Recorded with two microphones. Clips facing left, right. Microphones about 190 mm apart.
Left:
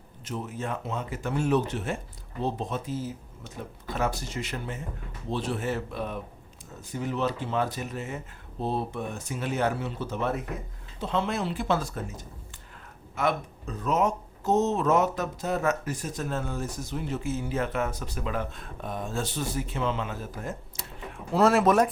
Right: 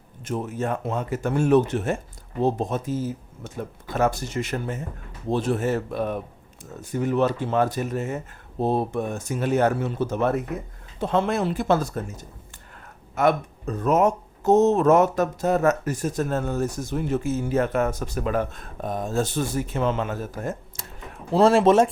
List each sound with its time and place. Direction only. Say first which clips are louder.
0.3 s speech: right 6 dB; 50° right (ahead or behind)
13.1 s speech: right 7 dB; 50° right (ahead or behind)
21.3 s speech: right 5 dB; 30° right (ahead or behind)